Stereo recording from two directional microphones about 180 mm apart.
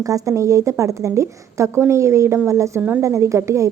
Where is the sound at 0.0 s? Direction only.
20° right (ahead or behind).